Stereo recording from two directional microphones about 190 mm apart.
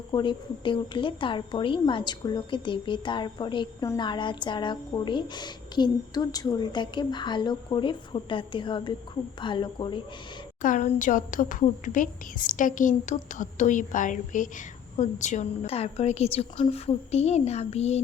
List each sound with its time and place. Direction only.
0.1 s a woman's voice: 25° left (ahead or behind)
10.6 s a woman's voice: 45° left (ahead or behind)